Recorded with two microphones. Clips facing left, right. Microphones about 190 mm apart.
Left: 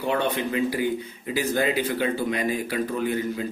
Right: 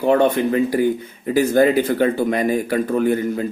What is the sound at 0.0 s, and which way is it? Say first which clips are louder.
Speech: right 9 dB; 45° right (ahead or behind).